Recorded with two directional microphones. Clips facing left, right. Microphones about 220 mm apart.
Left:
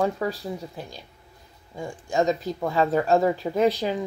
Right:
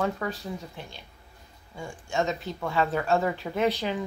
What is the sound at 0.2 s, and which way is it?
Speech, 35° left (ahead or behind).